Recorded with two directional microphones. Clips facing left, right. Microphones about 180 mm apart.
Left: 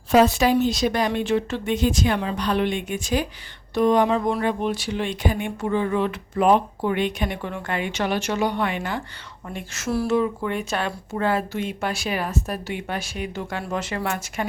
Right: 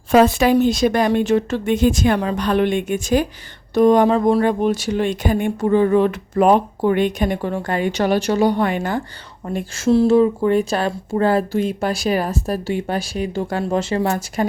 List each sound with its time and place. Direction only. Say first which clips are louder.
0.1 s speech: right 4 dB; 55° right (ahead or behind); by 14.4 s 35° right (ahead or behind)